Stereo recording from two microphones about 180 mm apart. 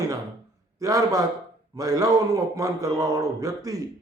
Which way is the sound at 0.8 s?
20° right (ahead or behind).